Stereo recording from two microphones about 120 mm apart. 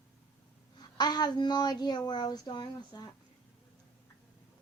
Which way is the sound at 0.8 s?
35° left (ahead or behind).